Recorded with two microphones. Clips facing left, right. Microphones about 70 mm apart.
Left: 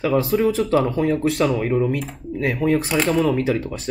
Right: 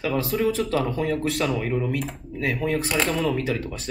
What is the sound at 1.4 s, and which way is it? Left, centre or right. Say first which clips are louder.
Speech: left 5 dB; centre.